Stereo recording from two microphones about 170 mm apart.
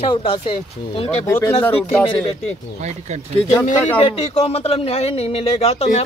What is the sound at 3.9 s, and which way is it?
A man's voice, 35° left (ahead or behind).